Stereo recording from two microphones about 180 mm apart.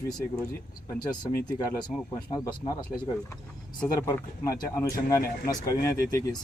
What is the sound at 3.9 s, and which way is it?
Speech, 15° left (ahead or behind).